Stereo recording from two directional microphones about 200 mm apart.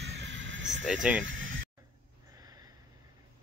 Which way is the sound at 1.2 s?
75° right (ahead or behind).